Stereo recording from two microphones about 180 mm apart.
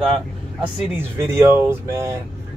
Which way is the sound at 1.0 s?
15° right (ahead or behind).